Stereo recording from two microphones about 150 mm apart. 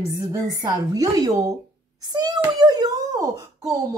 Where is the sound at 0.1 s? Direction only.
20° right (ahead or behind).